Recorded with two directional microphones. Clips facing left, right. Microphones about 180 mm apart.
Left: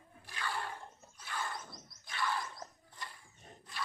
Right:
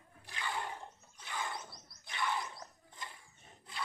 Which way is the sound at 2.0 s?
20° right (ahead or behind).